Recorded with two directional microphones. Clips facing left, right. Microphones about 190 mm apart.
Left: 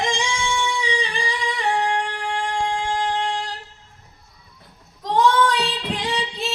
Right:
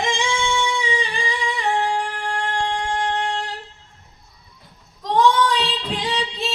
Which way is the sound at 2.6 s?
10° left (ahead or behind).